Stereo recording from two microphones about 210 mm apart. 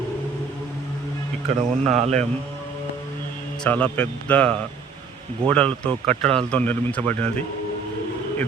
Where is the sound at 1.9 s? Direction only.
30° right (ahead or behind).